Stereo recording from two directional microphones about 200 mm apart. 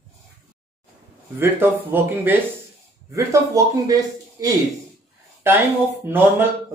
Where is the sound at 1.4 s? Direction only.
10° right (ahead or behind).